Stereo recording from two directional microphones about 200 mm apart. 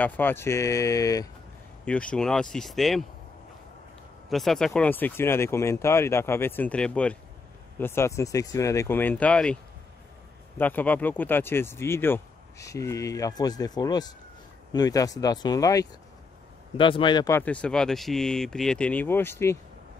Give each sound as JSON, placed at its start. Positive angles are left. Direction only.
{"t": 0.0, "sound": "speech", "side_deg": 10}
{"t": 1.9, "sound": "speech", "side_deg": 5}
{"t": 4.3, "sound": "speech", "side_deg": 0}
{"t": 10.6, "sound": "speech", "side_deg": 10}
{"t": 17.4, "sound": "speech", "side_deg": 5}